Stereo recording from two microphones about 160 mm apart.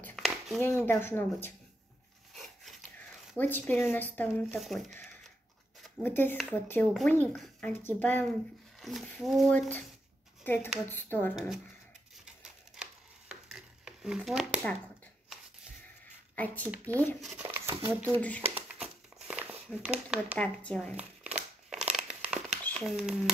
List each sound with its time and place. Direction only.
0.0 s a sound: centre (ahead or behind)
0.6 s speech: 15° left (ahead or behind)
2.3 s a sound: centre (ahead or behind)
3.3 s speech: 10° left (ahead or behind)
11.3 s speech: centre (ahead or behind)
13.3 s a sound: 5° right (ahead or behind)
16.3 s speech: 10° left (ahead or behind)
17.6 s a sound: 15° right (ahead or behind)
18.1 s speech: 10° left (ahead or behind)
18.5 s crumpling: 5° right (ahead or behind)
20.3 s speech: 5° left (ahead or behind)
20.9 s crumpling: 10° right (ahead or behind)
22.8 s speech: centre (ahead or behind)